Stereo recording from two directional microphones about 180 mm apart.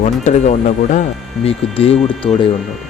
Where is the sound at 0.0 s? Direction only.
40° left (ahead or behind).